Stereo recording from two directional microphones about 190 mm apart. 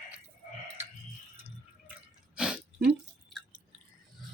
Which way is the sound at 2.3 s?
5° right (ahead or behind).